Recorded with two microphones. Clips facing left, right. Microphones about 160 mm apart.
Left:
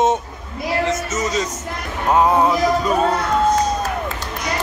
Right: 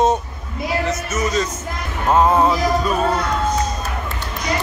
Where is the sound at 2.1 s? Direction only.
10° left (ahead or behind).